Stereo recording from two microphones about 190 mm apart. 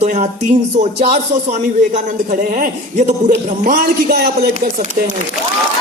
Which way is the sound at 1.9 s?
40° right (ahead or behind).